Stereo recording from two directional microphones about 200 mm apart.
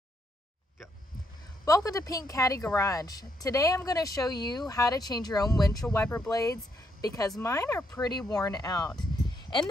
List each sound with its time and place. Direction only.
1.7 s a woman's voice: 15° left (ahead or behind)